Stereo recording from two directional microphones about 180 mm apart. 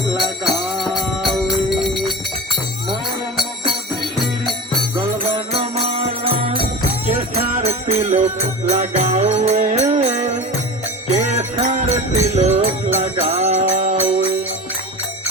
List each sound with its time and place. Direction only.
0.2 s music: centre (ahead or behind)
4.9 s music: 30° right (ahead or behind)
7.6 s music: 35° right (ahead or behind)